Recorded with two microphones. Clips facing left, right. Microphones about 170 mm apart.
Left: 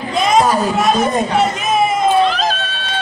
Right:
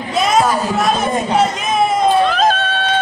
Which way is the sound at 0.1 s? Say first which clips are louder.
Left 1 dB; centre (ahead or behind).